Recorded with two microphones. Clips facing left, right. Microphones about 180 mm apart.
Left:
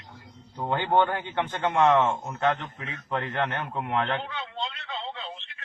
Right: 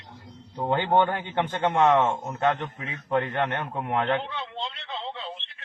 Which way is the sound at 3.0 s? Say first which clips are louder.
Right 3 dB; 20° right (ahead or behind).